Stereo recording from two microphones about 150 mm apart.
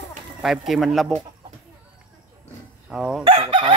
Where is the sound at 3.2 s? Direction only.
35° right (ahead or behind).